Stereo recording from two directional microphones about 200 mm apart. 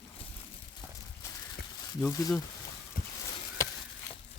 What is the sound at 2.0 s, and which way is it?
Speech, 15° left (ahead or behind).